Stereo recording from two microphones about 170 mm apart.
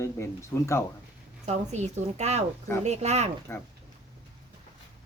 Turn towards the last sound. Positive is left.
turn(degrees=15)  # may be behind; listen again after turning